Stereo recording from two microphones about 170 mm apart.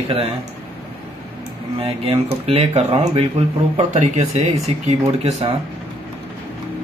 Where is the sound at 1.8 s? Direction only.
35° right (ahead or behind).